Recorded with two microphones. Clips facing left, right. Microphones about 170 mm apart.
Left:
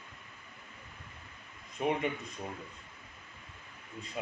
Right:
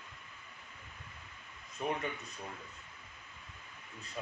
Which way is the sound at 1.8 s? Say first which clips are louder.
Left 5 dB; 20° left (ahead or behind).